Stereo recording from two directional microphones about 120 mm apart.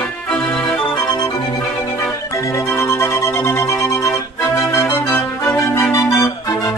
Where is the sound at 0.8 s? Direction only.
35° left (ahead or behind).